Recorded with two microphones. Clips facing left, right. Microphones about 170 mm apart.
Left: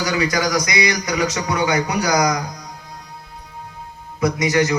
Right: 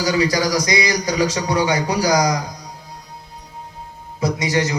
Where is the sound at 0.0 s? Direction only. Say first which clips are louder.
Right 2 dB; 30° right (ahead or behind).